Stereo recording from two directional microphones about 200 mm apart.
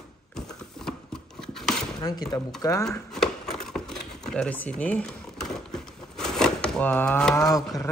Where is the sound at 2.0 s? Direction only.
20° left (ahead or behind).